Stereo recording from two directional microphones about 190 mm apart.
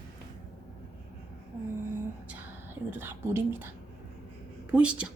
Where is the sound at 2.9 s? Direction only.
10° right (ahead or behind).